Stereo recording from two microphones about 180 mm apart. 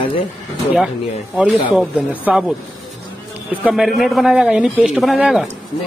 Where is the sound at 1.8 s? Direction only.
5° right (ahead or behind).